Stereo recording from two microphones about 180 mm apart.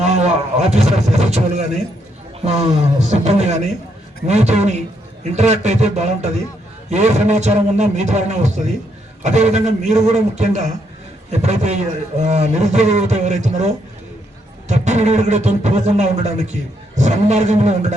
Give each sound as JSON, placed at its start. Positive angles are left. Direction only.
{"t": 0.0, "sound": "a sound", "side_deg": -40}
{"t": 0.7, "sound": "a man's voice", "side_deg": -35}
{"t": 14.7, "sound": "a man's voice", "side_deg": -40}